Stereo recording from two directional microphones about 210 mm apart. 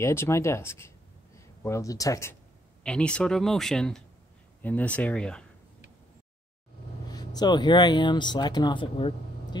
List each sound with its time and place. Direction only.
0.0 s speech: 10° left (ahead or behind)
7.1 s speech: 20° left (ahead or behind)